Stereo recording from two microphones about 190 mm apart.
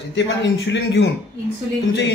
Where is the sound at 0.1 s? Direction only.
65° left (ahead or behind).